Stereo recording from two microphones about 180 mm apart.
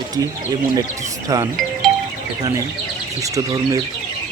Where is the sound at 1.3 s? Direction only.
20° right (ahead or behind).